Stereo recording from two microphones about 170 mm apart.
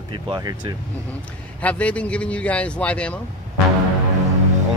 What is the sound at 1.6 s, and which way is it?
A man's voice, 10° left (ahead or behind).